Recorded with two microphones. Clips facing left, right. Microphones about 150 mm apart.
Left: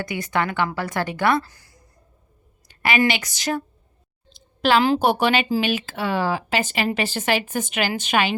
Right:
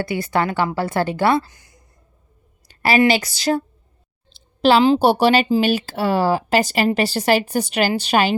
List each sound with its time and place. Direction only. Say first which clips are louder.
0.0 s speech: right 4 dB; 30° right (ahead or behind)
2.6 s a woman's voice: right 5 dB; 35° right (ahead or behind)
4.3 s a sound: right 4 dB; 30° right (ahead or behind)
4.9 s speech: right 4 dB; 35° right (ahead or behind)